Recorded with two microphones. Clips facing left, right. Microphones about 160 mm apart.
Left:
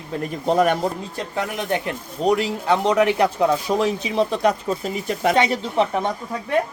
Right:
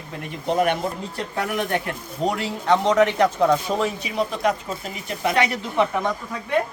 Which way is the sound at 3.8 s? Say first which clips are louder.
Left 4 dB; 25° left (ahead or behind).